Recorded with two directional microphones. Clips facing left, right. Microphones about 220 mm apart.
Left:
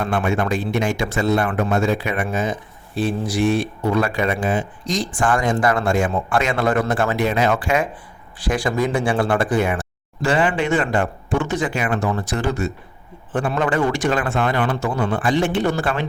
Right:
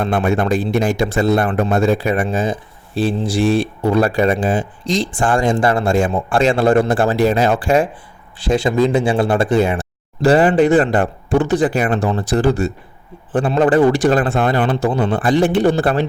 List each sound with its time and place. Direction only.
0.0 s speech: 35° right (ahead or behind)